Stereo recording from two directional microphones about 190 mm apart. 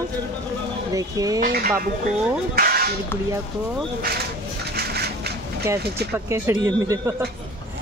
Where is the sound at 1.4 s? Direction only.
50° right (ahead or behind).